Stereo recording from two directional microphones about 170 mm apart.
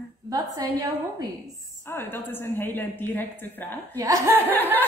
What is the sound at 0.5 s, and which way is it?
Speech, 20° right (ahead or behind).